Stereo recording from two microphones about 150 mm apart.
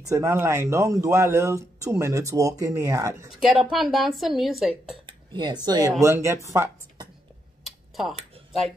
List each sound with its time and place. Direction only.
0.0 s speech: 20° right (ahead or behind)
3.3 s speech: centre (ahead or behind)
5.0 s speech: 30° right (ahead or behind)
7.6 s tick-tock: centre (ahead or behind)